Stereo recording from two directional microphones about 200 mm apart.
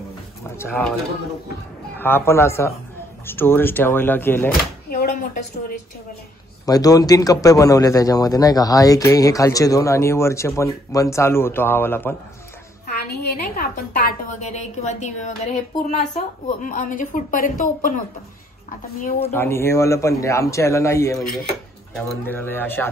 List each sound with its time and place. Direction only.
0.6 s a man's voice: 10° left (ahead or behind)
2.0 s a man's voice: 10° left (ahead or behind)
4.8 s a woman's voice: 45° left (ahead or behind)
6.6 s a man's voice: 20° left (ahead or behind)
12.8 s a woman's voice: 45° left (ahead or behind)
19.3 s a man's voice: 10° left (ahead or behind)